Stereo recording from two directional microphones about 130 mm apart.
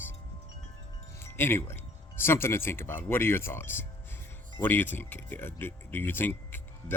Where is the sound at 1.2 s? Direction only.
20° left (ahead or behind).